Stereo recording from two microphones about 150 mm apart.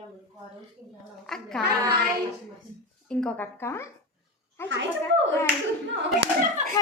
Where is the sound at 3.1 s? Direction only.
5° left (ahead or behind).